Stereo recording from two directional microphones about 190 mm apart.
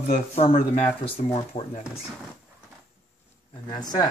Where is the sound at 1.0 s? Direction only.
30° left (ahead or behind).